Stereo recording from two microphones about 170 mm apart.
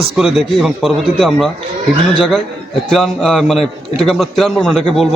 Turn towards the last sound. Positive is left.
turn(degrees=0)  # may be behind; listen again after turning